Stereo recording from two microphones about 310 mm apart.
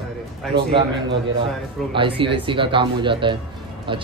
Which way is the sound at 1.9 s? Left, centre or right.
Centre.